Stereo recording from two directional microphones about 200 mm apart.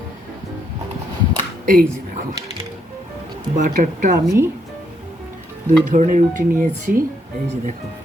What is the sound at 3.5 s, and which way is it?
Speech, 40° right (ahead or behind).